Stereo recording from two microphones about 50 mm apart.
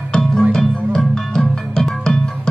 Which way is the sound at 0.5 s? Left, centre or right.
Centre.